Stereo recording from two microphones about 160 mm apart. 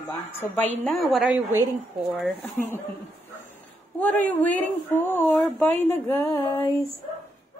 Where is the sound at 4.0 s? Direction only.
10° left (ahead or behind).